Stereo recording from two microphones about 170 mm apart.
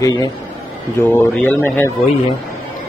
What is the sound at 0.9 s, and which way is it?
A man's voice, 10° left (ahead or behind).